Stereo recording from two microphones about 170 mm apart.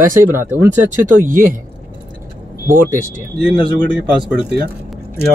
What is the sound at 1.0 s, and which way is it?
Speech, 50° right (ahead or behind).